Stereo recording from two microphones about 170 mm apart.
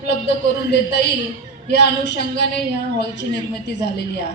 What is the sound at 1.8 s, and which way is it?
Speech, 80° left.